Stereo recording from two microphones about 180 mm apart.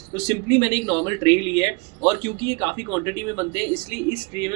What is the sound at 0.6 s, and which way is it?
Speech, 25° right (ahead or behind).